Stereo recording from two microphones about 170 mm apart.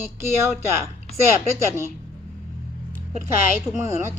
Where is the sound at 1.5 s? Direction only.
15° right (ahead or behind).